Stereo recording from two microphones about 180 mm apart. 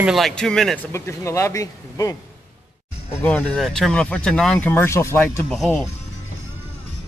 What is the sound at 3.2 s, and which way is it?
Speech, 10° left (ahead or behind).